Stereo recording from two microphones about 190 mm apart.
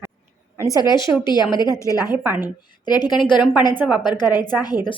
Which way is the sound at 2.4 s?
20° left (ahead or behind).